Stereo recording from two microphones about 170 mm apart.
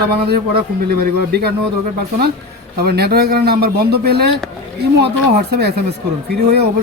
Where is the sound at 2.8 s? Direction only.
70° right (ahead or behind).